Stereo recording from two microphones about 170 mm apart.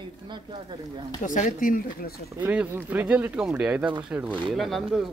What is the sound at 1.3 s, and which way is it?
Speech, 50° left (ahead or behind).